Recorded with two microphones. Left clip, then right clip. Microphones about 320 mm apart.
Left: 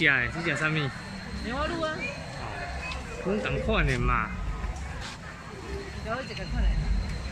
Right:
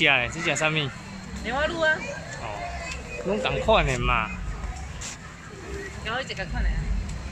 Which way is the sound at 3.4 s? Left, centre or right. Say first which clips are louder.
Right 9 dB; centre.